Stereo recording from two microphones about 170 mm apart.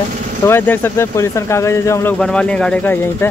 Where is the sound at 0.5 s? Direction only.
15° left (ahead or behind).